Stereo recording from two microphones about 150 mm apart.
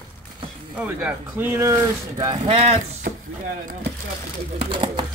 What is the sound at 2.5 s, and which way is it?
Speech, 45° right (ahead or behind).